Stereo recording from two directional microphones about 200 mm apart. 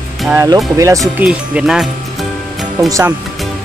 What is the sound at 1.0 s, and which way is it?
Speech, 5° right (ahead or behind).